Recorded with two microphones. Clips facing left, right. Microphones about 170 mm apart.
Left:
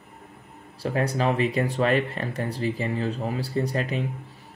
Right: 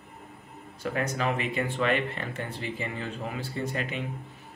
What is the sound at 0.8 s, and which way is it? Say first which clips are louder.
Speech: left 5 dB; 35° left (ahead or behind).